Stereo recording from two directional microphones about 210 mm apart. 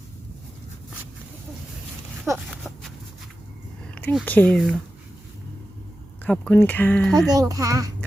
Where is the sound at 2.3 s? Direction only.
5° right (ahead or behind).